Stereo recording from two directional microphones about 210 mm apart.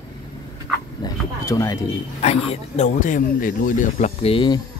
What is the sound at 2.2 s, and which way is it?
Speech, 30° left (ahead or behind).